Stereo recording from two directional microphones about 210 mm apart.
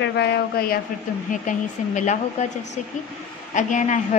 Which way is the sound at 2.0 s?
35° left (ahead or behind).